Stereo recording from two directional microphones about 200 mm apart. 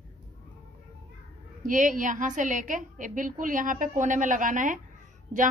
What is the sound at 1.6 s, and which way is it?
A woman's voice, 40° right (ahead or behind).